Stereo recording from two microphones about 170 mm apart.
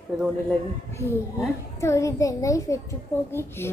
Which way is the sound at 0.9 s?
15° left (ahead or behind).